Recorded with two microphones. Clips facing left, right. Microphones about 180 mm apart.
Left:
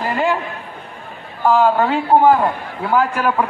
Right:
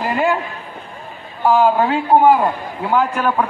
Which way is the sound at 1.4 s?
10° right (ahead or behind).